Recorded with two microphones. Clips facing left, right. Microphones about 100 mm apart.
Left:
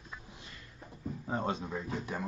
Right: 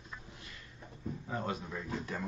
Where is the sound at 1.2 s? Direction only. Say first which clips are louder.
Left 4 dB; 30° left (ahead or behind).